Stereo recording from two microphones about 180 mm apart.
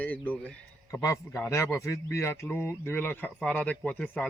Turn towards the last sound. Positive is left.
turn(degrees=10)  # may be behind; listen again after turning